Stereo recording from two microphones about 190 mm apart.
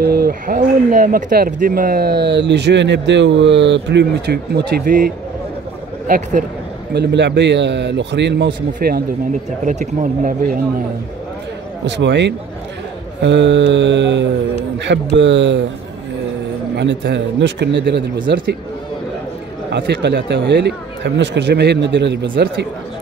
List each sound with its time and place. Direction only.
0.0 s speech: 55° right (ahead or behind)
6.9 s speech: 60° right (ahead or behind)
8.7 s speech: 55° right (ahead or behind)
9.7 s speech: 40° right (ahead or behind)
11.8 s speech: 65° right (ahead or behind)
16.7 s speech: 65° right (ahead or behind)
19.7 s speech: 65° right (ahead or behind)